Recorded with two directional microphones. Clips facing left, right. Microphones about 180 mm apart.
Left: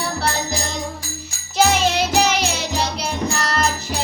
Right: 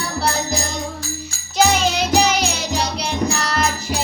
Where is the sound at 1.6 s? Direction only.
5° left (ahead or behind).